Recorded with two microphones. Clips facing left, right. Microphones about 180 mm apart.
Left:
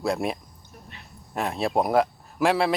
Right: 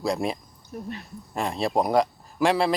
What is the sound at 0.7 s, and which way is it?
Speech, 40° right (ahead or behind).